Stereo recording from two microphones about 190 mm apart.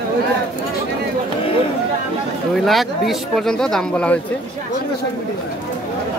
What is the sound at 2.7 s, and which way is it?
Speech, centre (ahead or behind).